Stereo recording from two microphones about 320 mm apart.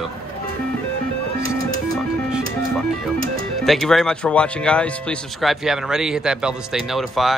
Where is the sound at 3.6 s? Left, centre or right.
Centre.